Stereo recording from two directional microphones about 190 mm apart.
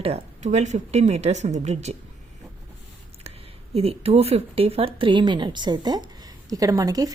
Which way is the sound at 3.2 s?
30° right (ahead or behind).